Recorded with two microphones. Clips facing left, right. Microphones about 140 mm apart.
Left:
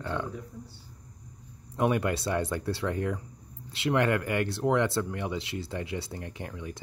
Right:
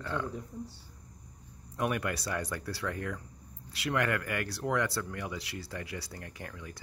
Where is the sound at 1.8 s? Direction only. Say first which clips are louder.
Left 6 dB; 25° left (ahead or behind).